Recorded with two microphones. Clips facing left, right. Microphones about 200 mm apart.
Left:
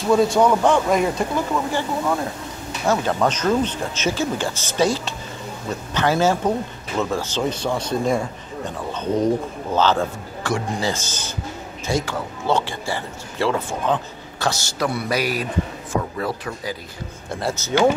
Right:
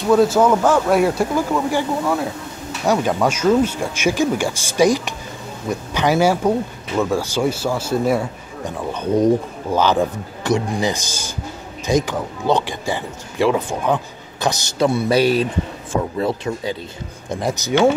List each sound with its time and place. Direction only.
0.1 s speech: 5° right (ahead or behind)